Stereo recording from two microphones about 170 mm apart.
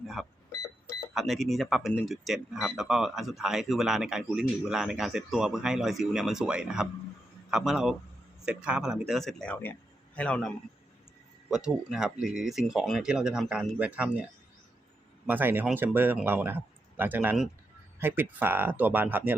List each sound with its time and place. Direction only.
0.2 s a man's voice: centre (ahead or behind)
11.5 s speech: 5° right (ahead or behind)
15.3 s speech: 10° right (ahead or behind)